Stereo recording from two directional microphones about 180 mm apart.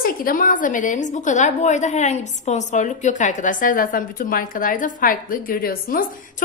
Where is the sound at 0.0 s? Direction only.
50° left (ahead or behind).